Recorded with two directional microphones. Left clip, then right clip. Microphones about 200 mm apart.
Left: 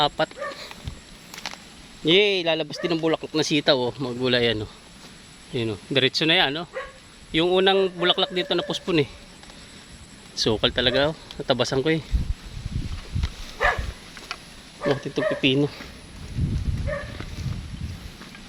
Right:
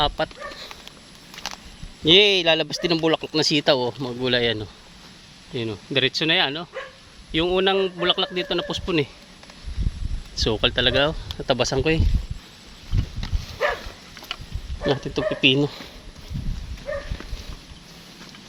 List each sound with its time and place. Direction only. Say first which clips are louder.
0.0 s speech: left 1 dB; 5° right (ahead or behind)
1.5 s a sound: right 2 dB; 35° right (ahead or behind)
2.0 s speech: right 4 dB; 25° right (ahead or behind); by 9.0 s centre (ahead or behind)
10.3 s speech: right 1 dB; centre (ahead or behind)
14.3 s a sound: right 2 dB; 10° right (ahead or behind)
14.8 s speech: even; 20° right (ahead or behind)